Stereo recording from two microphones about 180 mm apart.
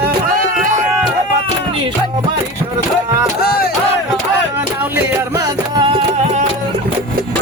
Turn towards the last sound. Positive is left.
turn(degrees=-25)  # may be behind; listen again after turning